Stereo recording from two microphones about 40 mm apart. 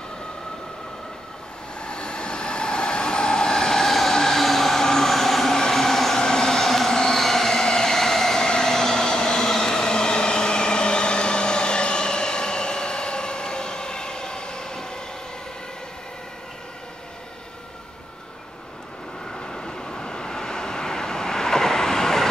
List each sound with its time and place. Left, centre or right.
1.8 s train: left
19.3 s vehicle: centre